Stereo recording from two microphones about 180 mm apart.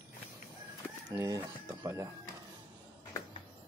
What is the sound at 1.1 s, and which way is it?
Speech, 20° right (ahead or behind).